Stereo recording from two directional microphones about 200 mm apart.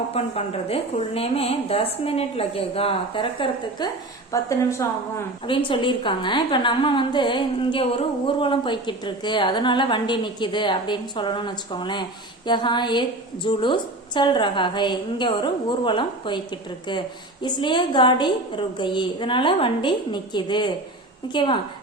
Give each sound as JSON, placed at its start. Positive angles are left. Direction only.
{"t": 0.1, "sound": "a woman's voice", "side_deg": 30}
{"t": 4.3, "sound": "a woman's voice", "side_deg": 15}
{"t": 5.5, "sound": "a woman's voice", "side_deg": 25}